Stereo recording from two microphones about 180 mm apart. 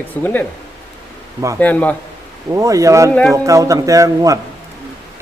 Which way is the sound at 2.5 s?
15° right (ahead or behind).